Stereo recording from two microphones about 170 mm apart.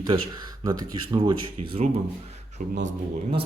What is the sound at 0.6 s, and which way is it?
Speech, 30° right (ahead or behind).